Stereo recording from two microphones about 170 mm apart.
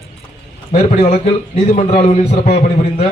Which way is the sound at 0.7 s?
40° left (ahead or behind).